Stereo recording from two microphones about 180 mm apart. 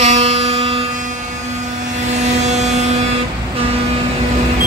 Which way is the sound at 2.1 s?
40° right (ahead or behind).